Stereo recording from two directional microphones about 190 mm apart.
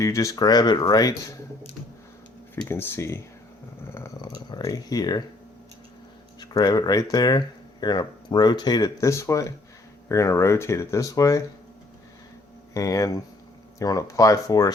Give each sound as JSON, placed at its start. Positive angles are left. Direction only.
{"t": 0.0, "sound": "speech", "side_deg": 15}
{"t": 2.6, "sound": "speech", "side_deg": 10}
{"t": 3.9, "sound": "a sound", "side_deg": 15}
{"t": 4.4, "sound": "speech", "side_deg": 20}
{"t": 6.4, "sound": "speech", "side_deg": 20}
{"t": 12.7, "sound": "speech", "side_deg": 15}